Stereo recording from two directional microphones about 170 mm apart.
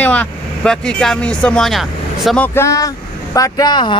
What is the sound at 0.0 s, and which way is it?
Speech, 10° left (ahead or behind).